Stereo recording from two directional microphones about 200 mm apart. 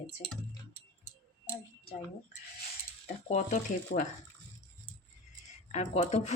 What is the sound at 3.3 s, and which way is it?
Speech, 35° left (ahead or behind).